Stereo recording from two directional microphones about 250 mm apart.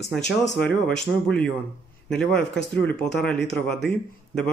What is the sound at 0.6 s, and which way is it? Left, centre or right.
A man's voice, centre.